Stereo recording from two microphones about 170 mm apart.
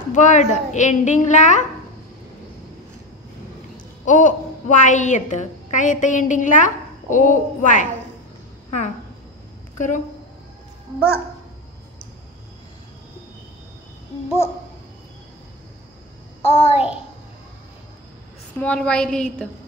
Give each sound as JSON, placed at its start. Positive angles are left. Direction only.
{"t": 0.1, "sound": "a woman's voice", "side_deg": 45}
{"t": 4.0, "sound": "a woman's voice", "side_deg": 45}
{"t": 8.6, "sound": "a sound", "side_deg": 45}
{"t": 9.8, "sound": "speech", "side_deg": 45}
{"t": 16.4, "sound": "a child's voice", "side_deg": 35}
{"t": 18.6, "sound": "a woman's voice", "side_deg": 5}